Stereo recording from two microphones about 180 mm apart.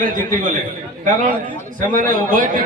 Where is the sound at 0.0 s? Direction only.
50° right (ahead or behind).